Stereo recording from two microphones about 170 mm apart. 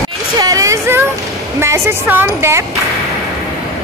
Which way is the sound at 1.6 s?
15° right (ahead or behind).